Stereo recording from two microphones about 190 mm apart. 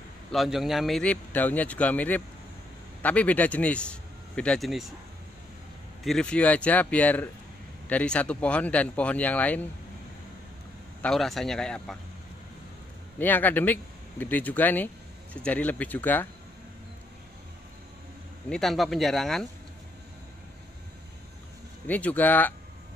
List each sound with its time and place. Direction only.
0.3 s a man's voice: centre (ahead or behind)
6.0 s a man's voice: 5° left (ahead or behind)
11.0 s speech: centre (ahead or behind)
13.2 s a man's voice: 10° left (ahead or behind)
18.5 s speech: centre (ahead or behind)
21.8 s a man's voice: 10° left (ahead or behind)